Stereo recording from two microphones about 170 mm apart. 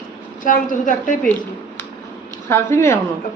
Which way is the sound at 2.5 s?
15° left (ahead or behind).